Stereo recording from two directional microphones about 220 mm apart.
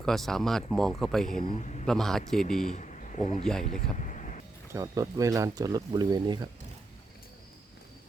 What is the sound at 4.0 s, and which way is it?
Vehicle, 35° left (ahead or behind).